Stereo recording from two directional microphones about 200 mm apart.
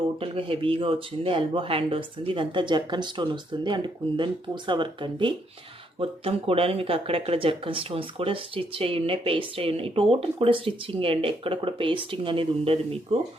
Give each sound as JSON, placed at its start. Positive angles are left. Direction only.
{"t": 0.2, "sound": "speech", "side_deg": -25}